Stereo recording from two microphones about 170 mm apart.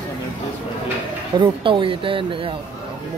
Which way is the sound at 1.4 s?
30° right (ahead or behind).